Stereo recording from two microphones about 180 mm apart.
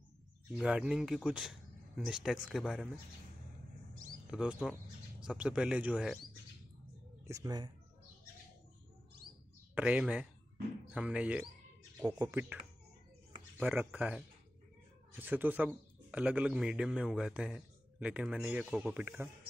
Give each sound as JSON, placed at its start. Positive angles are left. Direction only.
{"t": 0.5, "sound": "speech", "side_deg": -5}
{"t": 4.3, "sound": "speech", "side_deg": -5}
{"t": 7.2, "sound": "speech", "side_deg": -20}
{"t": 9.8, "sound": "a man's voice", "side_deg": -5}
{"t": 13.6, "sound": "a man's voice", "side_deg": -10}